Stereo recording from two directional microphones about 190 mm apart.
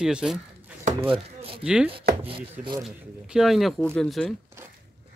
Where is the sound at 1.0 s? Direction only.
30° right (ahead or behind).